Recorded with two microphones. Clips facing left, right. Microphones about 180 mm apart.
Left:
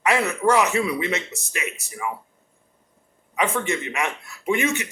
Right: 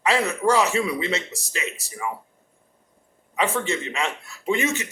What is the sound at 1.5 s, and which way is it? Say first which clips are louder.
Speech: even; 15° left (ahead or behind).